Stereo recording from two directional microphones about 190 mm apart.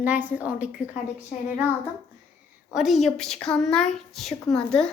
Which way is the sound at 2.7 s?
Centre (ahead or behind).